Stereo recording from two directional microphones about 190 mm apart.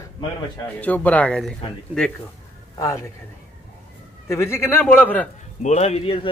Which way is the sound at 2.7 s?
15° left (ahead or behind).